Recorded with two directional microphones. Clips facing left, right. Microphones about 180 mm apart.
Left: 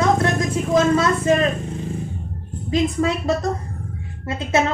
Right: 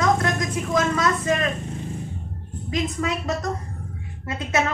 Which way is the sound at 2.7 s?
30° left (ahead or behind).